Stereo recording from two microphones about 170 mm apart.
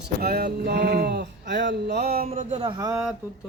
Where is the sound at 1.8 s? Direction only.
70° right (ahead or behind).